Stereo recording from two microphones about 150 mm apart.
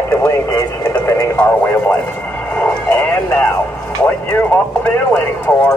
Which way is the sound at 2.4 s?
10° left (ahead or behind).